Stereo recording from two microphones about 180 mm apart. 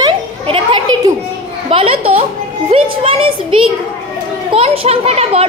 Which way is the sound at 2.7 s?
30° right (ahead or behind).